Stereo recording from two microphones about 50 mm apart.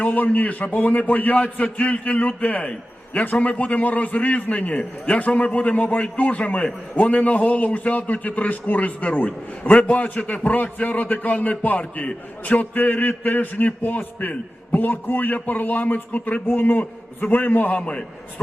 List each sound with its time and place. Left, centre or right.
0.0 s a man's voice: left
17.7 s a man's voice: left